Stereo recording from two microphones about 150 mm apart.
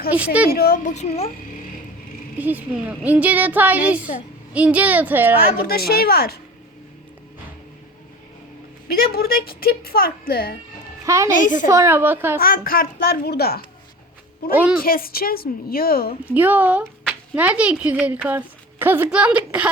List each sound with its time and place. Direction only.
0.5 s speech: 90° left
0.9 s speech: 45° left (ahead or behind)
2.4 s speech: 10° right (ahead or behind)
5.6 s speech: 90° left
8.9 s speech: 90° left
11.0 s a woman's voice: 20° right (ahead or behind)
11.3 s a woman's voice: 60° left (ahead or behind)
11.7 s speech: 20° right (ahead or behind)
12.4 s a woman's voice: 75° left (ahead or behind)
14.5 s speech: 10° right (ahead or behind)
14.8 s a woman's voice: 75° left (ahead or behind)
16.3 s speech: 10° right (ahead or behind)